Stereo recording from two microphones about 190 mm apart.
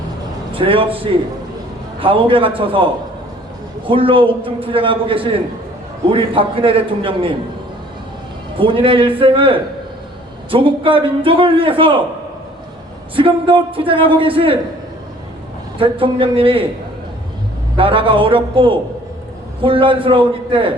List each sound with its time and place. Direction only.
0.5 s a man's voice: 30° right (ahead or behind)
8.5 s a man's voice: 25° right (ahead or behind)
13.1 s a man's voice: 25° right (ahead or behind)
15.8 s a man's voice: 25° right (ahead or behind)
17.7 s a man's voice: 30° right (ahead or behind)